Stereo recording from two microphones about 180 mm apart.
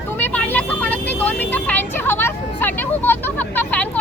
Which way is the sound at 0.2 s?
10° left (ahead or behind).